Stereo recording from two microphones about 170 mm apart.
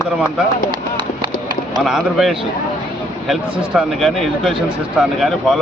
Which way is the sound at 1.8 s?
Centre (ahead or behind).